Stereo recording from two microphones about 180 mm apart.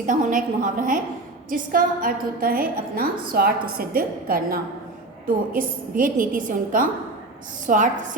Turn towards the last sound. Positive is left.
turn(degrees=-45)  # may be behind; listen again after turning